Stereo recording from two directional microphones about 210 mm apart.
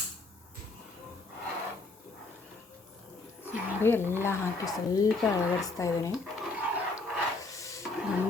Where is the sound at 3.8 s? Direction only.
10° left (ahead or behind).